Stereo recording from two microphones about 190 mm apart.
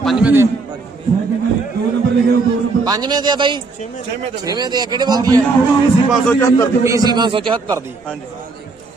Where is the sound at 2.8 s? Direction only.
20° right (ahead or behind).